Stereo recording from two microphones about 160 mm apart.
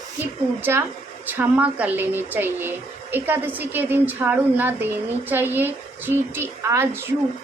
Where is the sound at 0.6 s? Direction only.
15° right (ahead or behind).